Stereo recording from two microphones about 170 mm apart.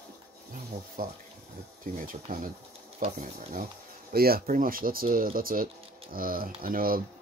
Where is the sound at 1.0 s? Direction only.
55° right (ahead or behind).